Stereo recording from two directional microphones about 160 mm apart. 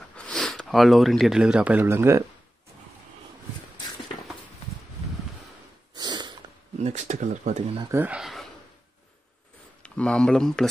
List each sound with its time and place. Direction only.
0.1 s speech: 5° left (ahead or behind); by 2.2 s 15° right (ahead or behind)
5.9 s a sound: 25° right (ahead or behind)
6.8 s speech: 50° right (ahead or behind)
7.9 s speech: 10° right (ahead or behind)
9.8 s speech: 5° left (ahead or behind)